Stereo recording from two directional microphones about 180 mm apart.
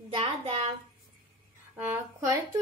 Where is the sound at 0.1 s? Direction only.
35° right (ahead or behind).